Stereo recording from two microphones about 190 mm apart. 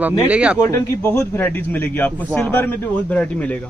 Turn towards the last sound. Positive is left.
turn(degrees=5)  # may be behind; listen again after turning